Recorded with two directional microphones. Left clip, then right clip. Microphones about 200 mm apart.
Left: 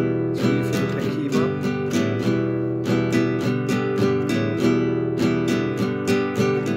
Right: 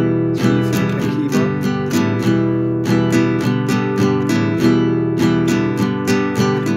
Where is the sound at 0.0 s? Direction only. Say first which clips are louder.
Right 5 dB; 40° right (ahead or behind).